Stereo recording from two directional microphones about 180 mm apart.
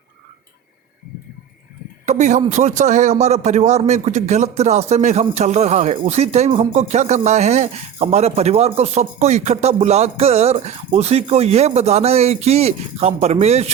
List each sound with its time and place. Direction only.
2.0 s speech: 40° right (ahead or behind)